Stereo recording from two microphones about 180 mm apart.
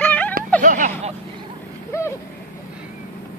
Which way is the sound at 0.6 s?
45° right (ahead or behind).